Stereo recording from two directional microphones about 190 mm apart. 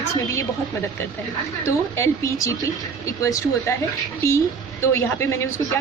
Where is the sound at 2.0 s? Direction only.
15° left (ahead or behind).